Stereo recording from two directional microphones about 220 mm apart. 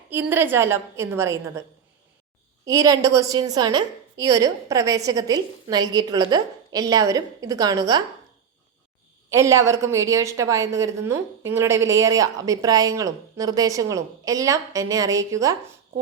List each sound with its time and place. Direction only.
0.1 s a woman's voice: 10° right (ahead or behind)
2.6 s a woman's voice: 15° right (ahead or behind)
9.3 s a woman's voice: 15° right (ahead or behind)